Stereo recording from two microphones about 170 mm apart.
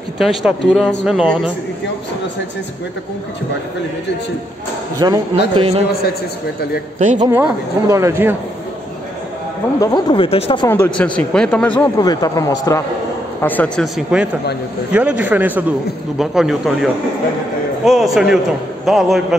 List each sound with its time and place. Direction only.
0.2 s speech: centre (ahead or behind)
4.9 s a man's voice: 20° right (ahead or behind)
5.5 s a man's voice: 35° right (ahead or behind)
7.0 s a man's voice: 45° right (ahead or behind)
7.2 s speech: 15° right (ahead or behind)
9.8 s speech: 25° left (ahead or behind)
10.7 s speech: 10° left (ahead or behind)
12.0 s speech: 20° left (ahead or behind)
13.9 s speech: 5° right (ahead or behind)